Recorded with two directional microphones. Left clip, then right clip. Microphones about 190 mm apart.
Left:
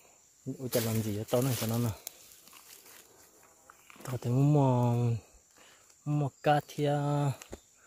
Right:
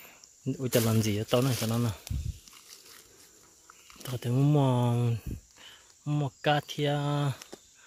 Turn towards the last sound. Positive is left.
turn(degrees=15)  # may be behind; listen again after turning